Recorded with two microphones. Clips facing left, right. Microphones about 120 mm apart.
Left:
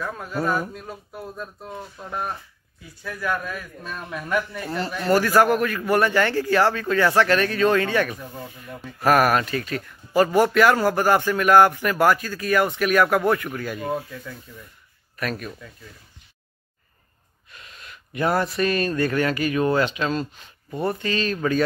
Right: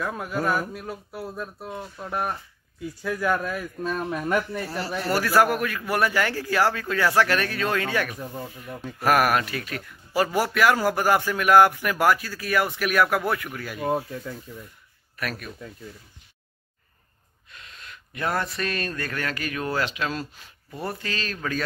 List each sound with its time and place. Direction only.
0.0 s speech: 10° right (ahead or behind)
3.8 s speech: 40° right (ahead or behind)
5.0 s speech: 5° right (ahead or behind)
13.9 s speech: 25° right (ahead or behind)
15.1 s speech: centre (ahead or behind)
17.5 s speech: 5° left (ahead or behind)